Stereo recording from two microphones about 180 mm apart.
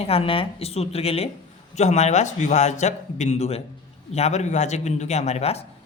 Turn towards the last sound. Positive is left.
turn(degrees=35)  # may be behind; listen again after turning